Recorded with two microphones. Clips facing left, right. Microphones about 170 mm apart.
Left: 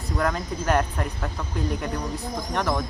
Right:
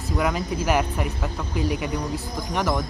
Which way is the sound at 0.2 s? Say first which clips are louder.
Right 2 dB; 5° right (ahead or behind).